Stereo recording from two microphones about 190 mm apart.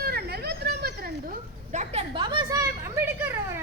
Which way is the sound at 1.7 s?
35° right (ahead or behind).